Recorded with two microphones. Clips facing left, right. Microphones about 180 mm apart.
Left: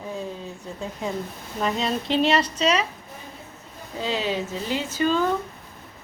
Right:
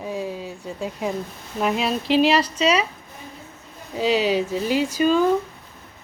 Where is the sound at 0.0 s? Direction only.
10° right (ahead or behind).